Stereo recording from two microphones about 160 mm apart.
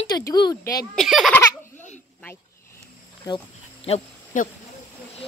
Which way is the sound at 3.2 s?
35° left (ahead or behind).